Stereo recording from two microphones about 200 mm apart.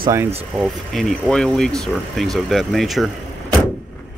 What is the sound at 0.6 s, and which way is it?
Speech, centre (ahead or behind).